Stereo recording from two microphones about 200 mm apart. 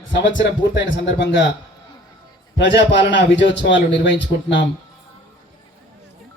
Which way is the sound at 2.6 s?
65° left (ahead or behind).